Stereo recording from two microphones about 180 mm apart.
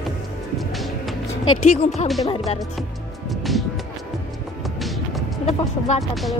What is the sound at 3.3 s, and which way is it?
Music, centre (ahead or behind).